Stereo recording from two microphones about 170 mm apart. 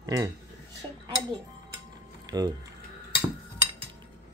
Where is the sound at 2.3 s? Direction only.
25° right (ahead or behind).